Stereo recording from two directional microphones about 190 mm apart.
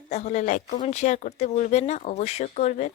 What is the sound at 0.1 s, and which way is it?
Speech, 35° left (ahead or behind).